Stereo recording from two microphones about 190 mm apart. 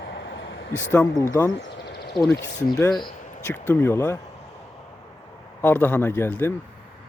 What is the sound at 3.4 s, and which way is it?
Speech, 10° left (ahead or behind).